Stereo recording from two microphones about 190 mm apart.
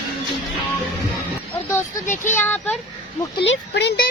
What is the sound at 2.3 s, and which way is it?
Speech, 10° left (ahead or behind).